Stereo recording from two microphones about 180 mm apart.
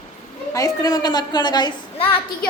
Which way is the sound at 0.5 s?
20° left (ahead or behind).